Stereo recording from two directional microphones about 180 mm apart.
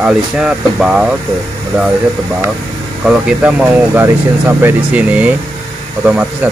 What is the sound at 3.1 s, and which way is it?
Speech, 5° right (ahead or behind).